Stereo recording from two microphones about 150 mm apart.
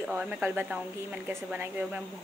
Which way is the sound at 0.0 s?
10° right (ahead or behind).